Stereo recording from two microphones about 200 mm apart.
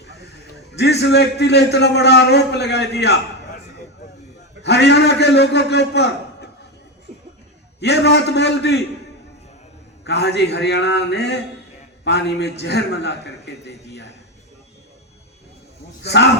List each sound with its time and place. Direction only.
0.8 s a man's voice: 55° left (ahead or behind)
4.6 s a man's voice: 60° left (ahead or behind)
7.8 s a man's voice: 55° left (ahead or behind)
10.0 s a man's voice: 55° left (ahead or behind)
16.0 s a man's voice: 55° left (ahead or behind)